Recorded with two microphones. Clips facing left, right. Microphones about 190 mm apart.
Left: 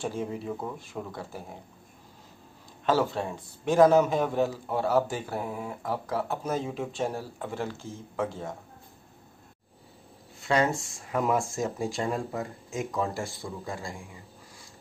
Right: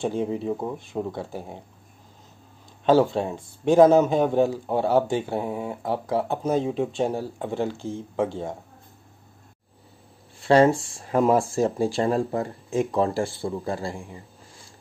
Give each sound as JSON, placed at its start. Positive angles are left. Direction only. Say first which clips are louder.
{"t": 0.0, "sound": "speech", "louder": "right 6 dB", "side_deg": -25}
{"t": 2.8, "sound": "speech", "louder": "right 7 dB", "side_deg": -30}
{"t": 10.4, "sound": "speech", "louder": "right 8 dB", "side_deg": -30}